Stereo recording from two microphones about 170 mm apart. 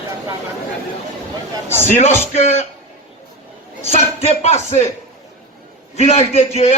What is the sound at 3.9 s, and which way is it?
Speech, 40° left (ahead or behind).